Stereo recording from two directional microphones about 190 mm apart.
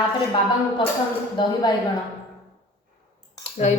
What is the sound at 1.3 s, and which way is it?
Speech, 20° left (ahead or behind).